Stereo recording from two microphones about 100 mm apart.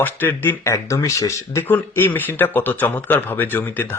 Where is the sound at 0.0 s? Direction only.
20° left (ahead or behind).